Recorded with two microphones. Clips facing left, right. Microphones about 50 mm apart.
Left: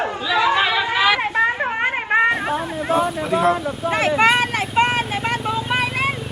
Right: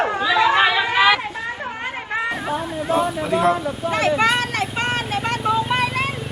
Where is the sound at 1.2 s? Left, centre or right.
Left.